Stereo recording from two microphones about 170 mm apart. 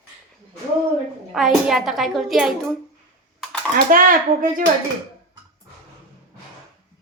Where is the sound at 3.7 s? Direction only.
55° right (ahead or behind).